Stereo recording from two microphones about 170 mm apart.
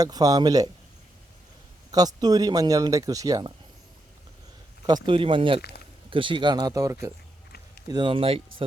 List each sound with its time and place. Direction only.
0.0 s speech: 20° right (ahead or behind)
1.9 s speech: 20° right (ahead or behind)
5.0 s speech: 30° right (ahead or behind)